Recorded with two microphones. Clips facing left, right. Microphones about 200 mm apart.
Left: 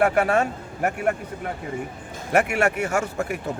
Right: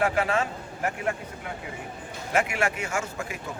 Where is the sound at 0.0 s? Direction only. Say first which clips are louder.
Left 5 dB; 50° left (ahead or behind).